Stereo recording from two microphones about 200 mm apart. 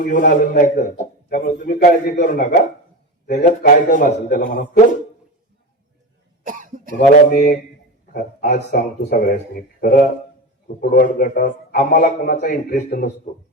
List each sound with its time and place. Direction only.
0.0 s a man's voice: 40° left (ahead or behind)
6.4 s cough: 40° right (ahead or behind)
7.3 s a man's voice: 40° left (ahead or behind)
8.5 s a man's voice: 50° left (ahead or behind)